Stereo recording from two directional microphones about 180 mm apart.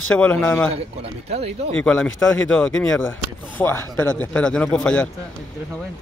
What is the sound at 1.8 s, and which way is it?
Speech, 5° left (ahead or behind).